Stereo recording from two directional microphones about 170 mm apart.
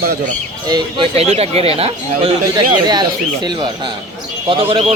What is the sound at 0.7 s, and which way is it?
Speech, 25° right (ahead or behind).